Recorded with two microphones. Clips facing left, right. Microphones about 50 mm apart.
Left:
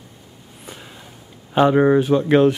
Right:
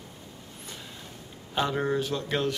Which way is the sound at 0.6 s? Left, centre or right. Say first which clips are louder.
Left 6 dB; centre.